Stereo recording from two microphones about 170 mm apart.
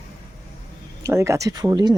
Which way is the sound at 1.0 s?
15° right (ahead or behind).